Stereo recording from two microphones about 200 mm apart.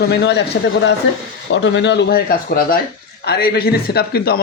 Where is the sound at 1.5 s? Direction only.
65° left (ahead or behind).